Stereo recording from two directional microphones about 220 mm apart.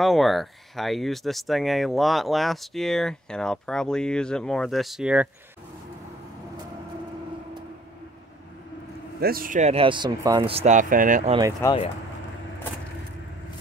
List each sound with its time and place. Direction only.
0.0 s speech: centre (ahead or behind)
9.2 s speech: 40° right (ahead or behind)
11.6 s speech: 10° left (ahead or behind)